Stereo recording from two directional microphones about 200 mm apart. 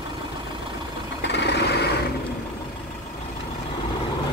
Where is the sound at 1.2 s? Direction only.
60° left (ahead or behind).